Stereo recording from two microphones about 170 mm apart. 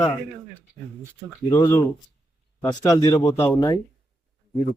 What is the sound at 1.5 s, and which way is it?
Speech, 15° left (ahead or behind).